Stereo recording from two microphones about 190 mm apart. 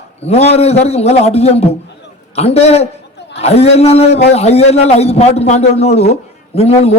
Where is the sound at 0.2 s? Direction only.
35° left (ahead or behind).